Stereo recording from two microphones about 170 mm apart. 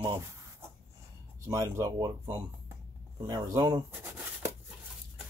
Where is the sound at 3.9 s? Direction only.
15° right (ahead or behind).